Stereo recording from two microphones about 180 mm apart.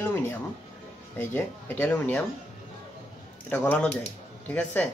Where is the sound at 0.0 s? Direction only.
10° left (ahead or behind).